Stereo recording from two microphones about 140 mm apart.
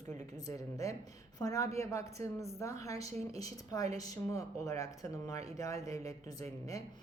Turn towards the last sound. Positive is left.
turn(degrees=25)  # may be behind; listen again after turning